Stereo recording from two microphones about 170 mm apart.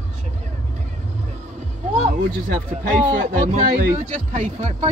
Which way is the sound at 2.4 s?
55° right (ahead or behind).